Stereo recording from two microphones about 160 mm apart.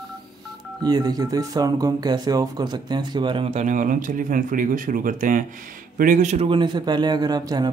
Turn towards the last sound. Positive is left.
turn(degrees=-25)  # may be behind; listen again after turning